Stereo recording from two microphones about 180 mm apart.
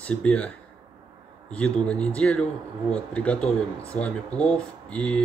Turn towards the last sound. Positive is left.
turn(degrees=5)  # may be behind; listen again after turning